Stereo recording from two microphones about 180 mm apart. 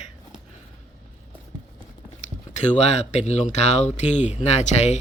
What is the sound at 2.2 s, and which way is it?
Speech, 40° left (ahead or behind).